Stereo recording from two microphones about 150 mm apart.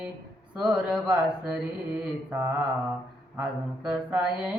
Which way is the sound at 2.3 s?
10° right (ahead or behind).